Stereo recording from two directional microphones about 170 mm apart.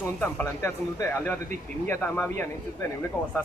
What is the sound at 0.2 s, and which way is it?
Speech, 10° left (ahead or behind).